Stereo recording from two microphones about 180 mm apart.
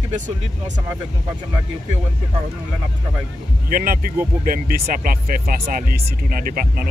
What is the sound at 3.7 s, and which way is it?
Speech, 55° right (ahead or behind).